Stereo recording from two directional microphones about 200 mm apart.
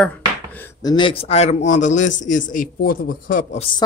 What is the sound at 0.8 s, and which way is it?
Speech, 20° left (ahead or behind).